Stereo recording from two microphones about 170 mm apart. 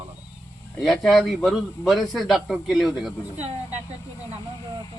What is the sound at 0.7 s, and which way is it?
A man's voice, centre (ahead or behind).